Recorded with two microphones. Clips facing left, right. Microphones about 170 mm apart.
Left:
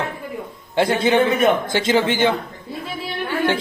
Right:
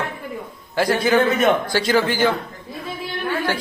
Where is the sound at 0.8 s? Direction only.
25° left (ahead or behind).